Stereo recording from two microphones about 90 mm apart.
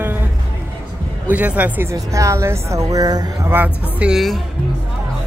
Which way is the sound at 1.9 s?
35° right (ahead or behind).